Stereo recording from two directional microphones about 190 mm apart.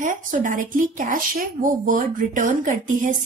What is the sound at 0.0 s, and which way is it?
A woman's voice, 45° right (ahead or behind).